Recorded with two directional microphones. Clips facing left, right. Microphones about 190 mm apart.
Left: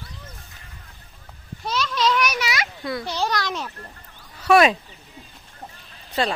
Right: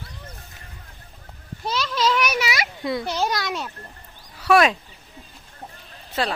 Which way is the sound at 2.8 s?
25° right (ahead or behind).